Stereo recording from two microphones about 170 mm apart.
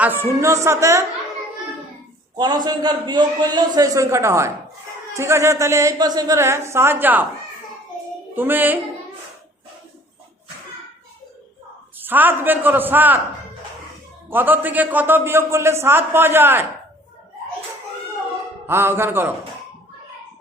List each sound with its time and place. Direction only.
0.0 s a man's voice: 10° right (ahead or behind)
2.3 s a man's voice: 25° right (ahead or behind)
8.4 s a man's voice: 10° right (ahead or behind)
11.9 s a man's voice: 10° right (ahead or behind)
14.3 s a man's voice: 10° right (ahead or behind)
18.6 s a man's voice: 15° right (ahead or behind)